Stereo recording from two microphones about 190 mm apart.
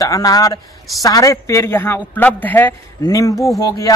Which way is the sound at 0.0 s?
20° left (ahead or behind).